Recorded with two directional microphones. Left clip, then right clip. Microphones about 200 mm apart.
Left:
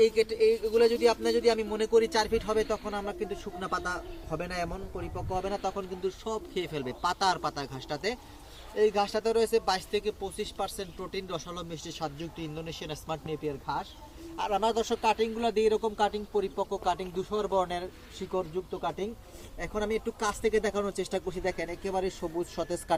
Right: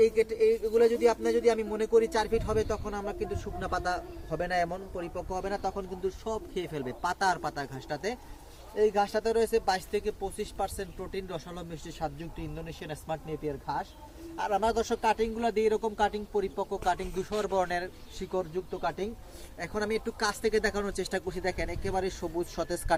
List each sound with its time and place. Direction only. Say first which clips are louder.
0.0 s speech: even; 5° right (ahead or behind); by 5.5 s 20° left (ahead or behind)
5.5 s speech: even; 5° left (ahead or behind)